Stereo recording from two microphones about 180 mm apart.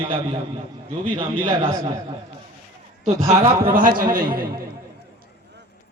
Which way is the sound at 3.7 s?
50° right (ahead or behind).